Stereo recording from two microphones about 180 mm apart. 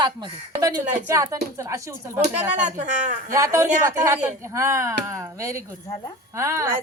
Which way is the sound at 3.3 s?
15° right (ahead or behind).